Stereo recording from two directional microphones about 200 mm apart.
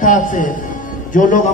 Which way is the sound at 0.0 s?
40° left (ahead or behind).